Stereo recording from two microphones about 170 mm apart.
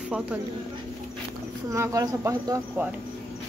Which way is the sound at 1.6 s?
15° right (ahead or behind).